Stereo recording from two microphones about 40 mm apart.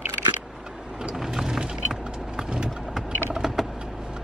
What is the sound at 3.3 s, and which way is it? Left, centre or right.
Typing, centre.